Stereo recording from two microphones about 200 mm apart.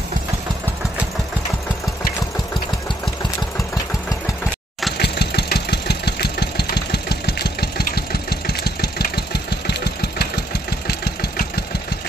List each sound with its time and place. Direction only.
4.9 s engine: 55° left (ahead or behind)